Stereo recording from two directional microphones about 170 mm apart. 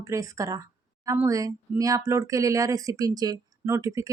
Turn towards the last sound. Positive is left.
turn(degrees=-20)  # may be behind; listen again after turning